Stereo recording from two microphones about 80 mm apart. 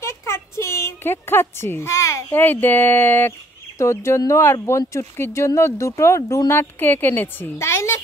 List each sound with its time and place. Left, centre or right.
0.0 s sheep: left
2.3 s a woman's voice: left
6.5 s speech: left